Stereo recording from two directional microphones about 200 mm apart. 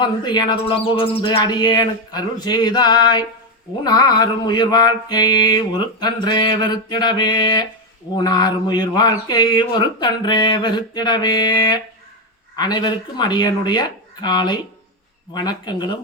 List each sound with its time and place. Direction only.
0.0 s mantra: 20° left (ahead or behind)